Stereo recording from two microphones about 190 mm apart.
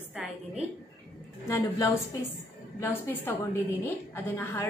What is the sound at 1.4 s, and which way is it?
A woman's voice, 15° left (ahead or behind).